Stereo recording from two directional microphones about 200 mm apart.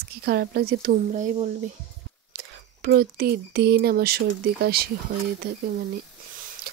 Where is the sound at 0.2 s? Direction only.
50° right (ahead or behind); by 1.5 s 35° right (ahead or behind).